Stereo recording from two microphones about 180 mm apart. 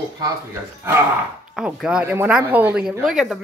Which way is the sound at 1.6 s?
5° right (ahead or behind).